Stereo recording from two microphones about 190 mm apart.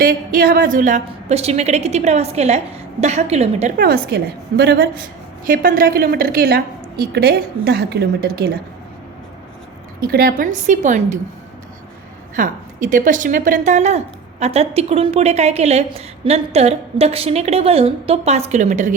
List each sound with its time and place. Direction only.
0.0 s a woman's voice: 50° right (ahead or behind)
3.8 s a woman's voice: 55° right (ahead or behind)
5.5 s a woman's voice: 50° right (ahead or behind)
10.0 s a woman's voice: 50° right (ahead or behind)
12.4 s a woman's voice: 45° right (ahead or behind)